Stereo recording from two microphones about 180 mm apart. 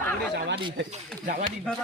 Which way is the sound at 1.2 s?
45° right (ahead or behind).